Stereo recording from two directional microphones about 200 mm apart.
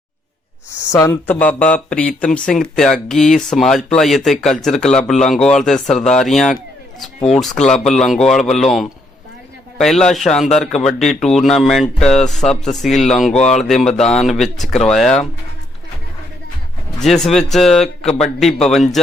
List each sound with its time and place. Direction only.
0.9 s speech: 10° left (ahead or behind)
7.6 s speech: 5° left (ahead or behind)
13.3 s speech: 35° left (ahead or behind)
13.7 s speech: centre (ahead or behind)
17.0 s speech: centre (ahead or behind)